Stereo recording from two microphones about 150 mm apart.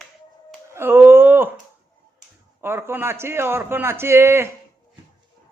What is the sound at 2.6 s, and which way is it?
Speech, 15° right (ahead or behind).